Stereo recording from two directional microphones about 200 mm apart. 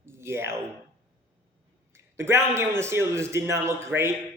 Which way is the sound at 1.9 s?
15° right (ahead or behind).